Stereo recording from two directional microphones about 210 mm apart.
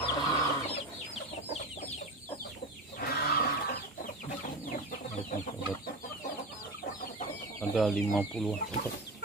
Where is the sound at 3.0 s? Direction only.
50° left (ahead or behind).